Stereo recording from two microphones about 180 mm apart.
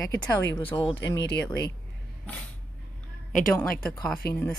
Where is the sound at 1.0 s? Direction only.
85° left.